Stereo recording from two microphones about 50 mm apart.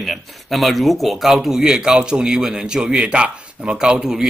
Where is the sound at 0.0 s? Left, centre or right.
Centre.